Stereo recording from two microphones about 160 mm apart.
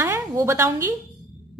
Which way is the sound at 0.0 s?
15° right (ahead or behind).